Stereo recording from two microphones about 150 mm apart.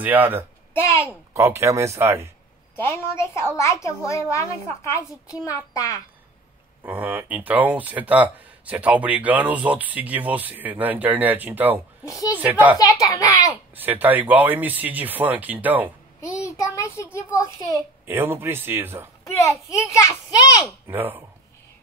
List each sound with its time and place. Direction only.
0.0 s speech: 10° right (ahead or behind)
0.7 s a child's voice: 20° left (ahead or behind)
1.3 s speech: 20° right (ahead or behind)
2.7 s a woman's voice: 15° left (ahead or behind)
6.8 s speech: 10° right (ahead or behind)
12.0 s a woman's voice: 20° left (ahead or behind)
12.4 s speech: 10° right (ahead or behind)
12.7 s a child's voice: 20° left (ahead or behind)
13.7 s speech: 10° right (ahead or behind)
16.2 s a child's voice: 20° left (ahead or behind)
18.0 s speech: 15° right (ahead or behind)
19.2 s a child's voice: 20° left (ahead or behind)
20.9 s speech: 15° right (ahead or behind)